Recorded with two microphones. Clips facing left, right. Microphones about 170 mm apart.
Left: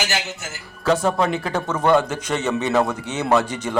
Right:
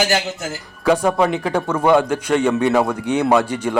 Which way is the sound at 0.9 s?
10° right (ahead or behind).